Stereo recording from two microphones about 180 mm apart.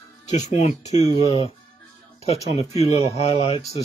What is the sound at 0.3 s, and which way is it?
Speech, 40° left (ahead or behind).